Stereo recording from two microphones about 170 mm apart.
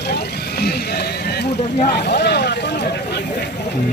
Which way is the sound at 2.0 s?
80° left.